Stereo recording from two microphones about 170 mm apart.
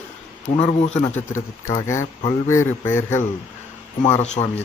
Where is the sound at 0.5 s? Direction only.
35° left (ahead or behind).